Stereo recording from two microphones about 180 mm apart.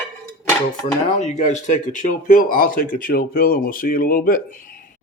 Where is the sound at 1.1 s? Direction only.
40° left (ahead or behind).